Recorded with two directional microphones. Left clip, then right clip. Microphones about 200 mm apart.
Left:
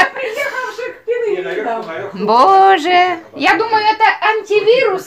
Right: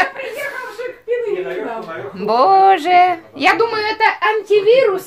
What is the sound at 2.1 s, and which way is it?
A woman's voice, 5° left (ahead or behind).